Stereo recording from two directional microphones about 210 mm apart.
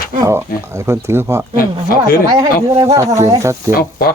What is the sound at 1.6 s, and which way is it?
Speech, 45° left (ahead or behind).